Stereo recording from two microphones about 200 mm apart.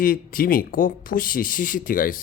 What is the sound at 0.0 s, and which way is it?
A man's voice, 45° left (ahead or behind).